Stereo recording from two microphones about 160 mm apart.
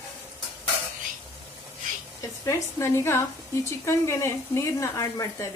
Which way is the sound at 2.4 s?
20° left (ahead or behind).